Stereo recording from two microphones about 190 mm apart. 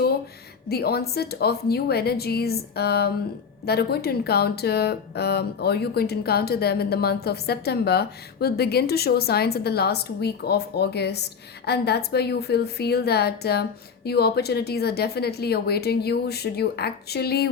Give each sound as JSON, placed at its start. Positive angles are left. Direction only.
{"t": 0.7, "sound": "speech", "side_deg": 55}